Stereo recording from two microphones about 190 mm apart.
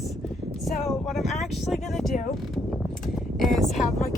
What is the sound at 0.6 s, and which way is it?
Speech, centre (ahead or behind).